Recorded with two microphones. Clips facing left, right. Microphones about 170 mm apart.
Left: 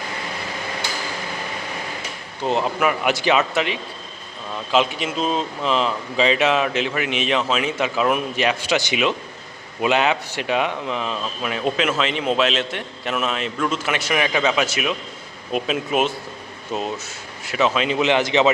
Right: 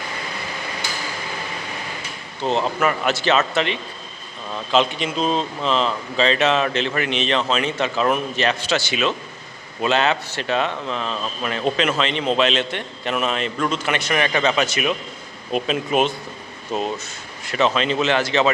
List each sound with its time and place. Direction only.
2.4 s speech: 10° left (ahead or behind)